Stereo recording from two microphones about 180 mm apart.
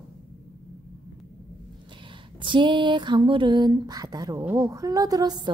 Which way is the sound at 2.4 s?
25° right (ahead or behind).